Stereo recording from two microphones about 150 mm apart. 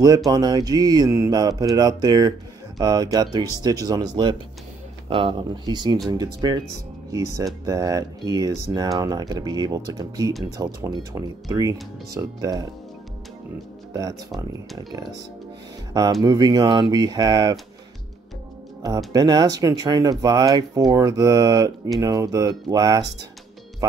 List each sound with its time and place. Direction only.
0.3 s speech: 25° right (ahead or behind)
14.5 s speech: 25° right (ahead or behind)
19.1 s speech: 25° right (ahead or behind)